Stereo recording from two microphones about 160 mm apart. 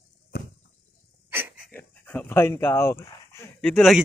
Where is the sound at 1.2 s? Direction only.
10° right (ahead or behind).